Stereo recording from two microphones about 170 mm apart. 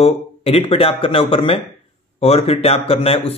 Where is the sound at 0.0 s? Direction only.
35° left (ahead or behind).